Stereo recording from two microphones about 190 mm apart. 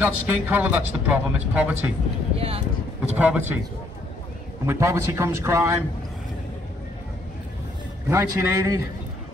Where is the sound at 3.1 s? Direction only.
10° right (ahead or behind).